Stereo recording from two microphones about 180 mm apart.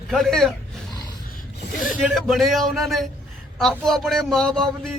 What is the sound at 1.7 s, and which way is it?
Speech, 50° left (ahead or behind).